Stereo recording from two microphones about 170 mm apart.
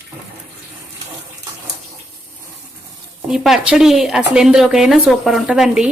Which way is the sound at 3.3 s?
5° right (ahead or behind).